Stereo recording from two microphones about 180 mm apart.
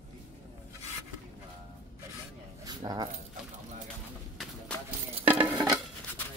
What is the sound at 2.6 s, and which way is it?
Keys jangling, 20° right (ahead or behind).